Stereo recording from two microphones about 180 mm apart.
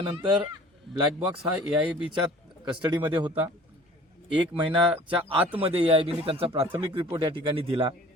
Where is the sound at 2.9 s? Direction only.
25° right (ahead or behind).